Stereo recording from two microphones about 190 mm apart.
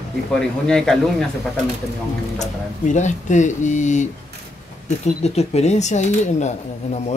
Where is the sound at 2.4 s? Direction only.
40° left (ahead or behind).